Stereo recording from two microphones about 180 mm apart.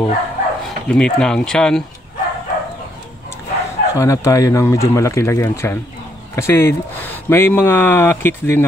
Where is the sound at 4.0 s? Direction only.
20° left (ahead or behind).